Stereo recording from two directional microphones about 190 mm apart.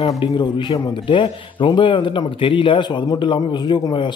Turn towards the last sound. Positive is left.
turn(degrees=25)  # may be behind; listen again after turning